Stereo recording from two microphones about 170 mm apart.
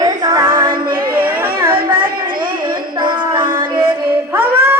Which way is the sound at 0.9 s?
60° right (ahead or behind).